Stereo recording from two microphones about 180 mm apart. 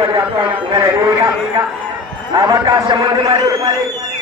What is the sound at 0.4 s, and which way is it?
Speech, 25° right (ahead or behind).